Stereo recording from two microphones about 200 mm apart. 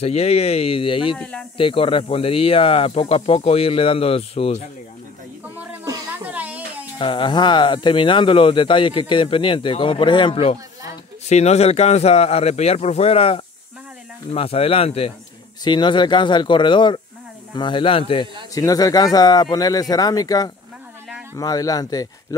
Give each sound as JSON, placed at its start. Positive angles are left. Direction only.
{"t": 0.0, "sound": "a man's voice", "side_deg": 30}
{"t": 1.1, "sound": "speech", "side_deg": 5}
{"t": 1.6, "sound": "speech", "side_deg": 25}
{"t": 5.6, "sound": "music", "side_deg": -10}
{"t": 7.0, "sound": "a man's voice", "side_deg": 25}